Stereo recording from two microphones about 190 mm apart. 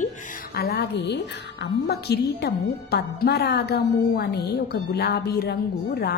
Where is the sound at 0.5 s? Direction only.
55° left (ahead or behind).